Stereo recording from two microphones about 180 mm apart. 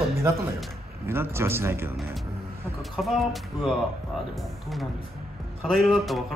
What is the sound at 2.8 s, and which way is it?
Speech, centre (ahead or behind).